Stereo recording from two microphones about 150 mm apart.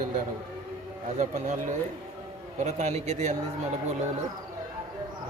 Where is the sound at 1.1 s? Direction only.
50° right (ahead or behind).